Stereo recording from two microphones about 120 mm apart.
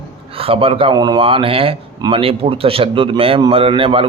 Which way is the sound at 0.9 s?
35° right (ahead or behind).